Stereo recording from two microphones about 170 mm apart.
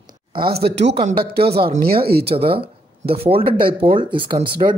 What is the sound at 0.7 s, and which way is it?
Speech, 90° right.